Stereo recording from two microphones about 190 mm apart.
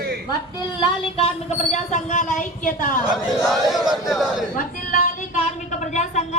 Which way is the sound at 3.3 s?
Centre (ahead or behind).